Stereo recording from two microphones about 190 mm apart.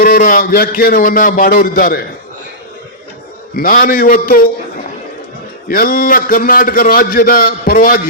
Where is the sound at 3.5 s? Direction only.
50° left (ahead or behind).